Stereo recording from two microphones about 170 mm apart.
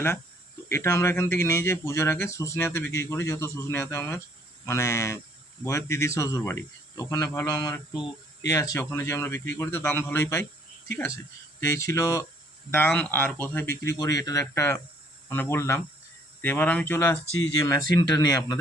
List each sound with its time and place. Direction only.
0.7 s cricket: 15° left (ahead or behind)
10.8 s speech: 15° left (ahead or behind)
11.6 s cricket: 20° left (ahead or behind)
17.9 s speech: 20° left (ahead or behind)